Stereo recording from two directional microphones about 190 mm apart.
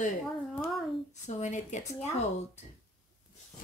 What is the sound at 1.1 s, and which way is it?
Speech, 40° left (ahead or behind).